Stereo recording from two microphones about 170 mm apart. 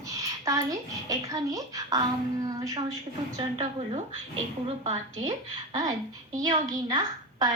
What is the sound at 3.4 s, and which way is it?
Speech, 30° right (ahead or behind).